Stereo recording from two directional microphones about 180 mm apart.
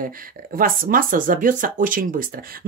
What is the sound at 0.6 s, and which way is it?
Speech, 50° right (ahead or behind).